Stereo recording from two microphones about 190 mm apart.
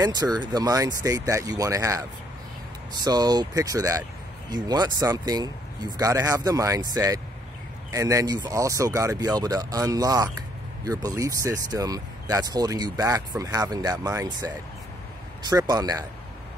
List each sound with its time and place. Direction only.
0.0 s speech: 20° right (ahead or behind)